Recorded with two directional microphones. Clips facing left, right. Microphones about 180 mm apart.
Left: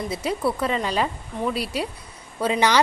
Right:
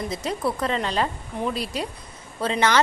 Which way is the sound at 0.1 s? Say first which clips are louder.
Left 2 dB; 10° left (ahead or behind).